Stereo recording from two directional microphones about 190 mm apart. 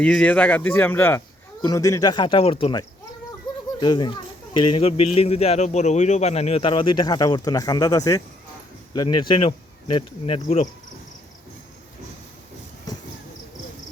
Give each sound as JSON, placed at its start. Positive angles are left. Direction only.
{"t": 0.0, "sound": "speech", "side_deg": 5}